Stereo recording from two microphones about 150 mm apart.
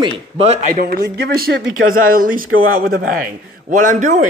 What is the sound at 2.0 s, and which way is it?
A man's voice, 70° right (ahead or behind).